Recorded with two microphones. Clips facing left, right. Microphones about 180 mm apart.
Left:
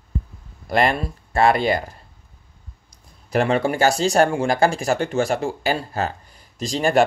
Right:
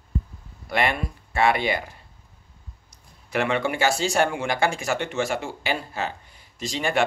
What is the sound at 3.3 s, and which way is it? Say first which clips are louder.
Speech: left 5 dB; 35° left (ahead or behind).